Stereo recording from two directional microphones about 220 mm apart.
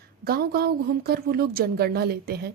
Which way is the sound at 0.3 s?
45° right (ahead or behind).